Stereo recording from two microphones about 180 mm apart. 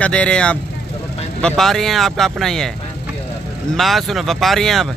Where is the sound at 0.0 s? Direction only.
5° left (ahead or behind).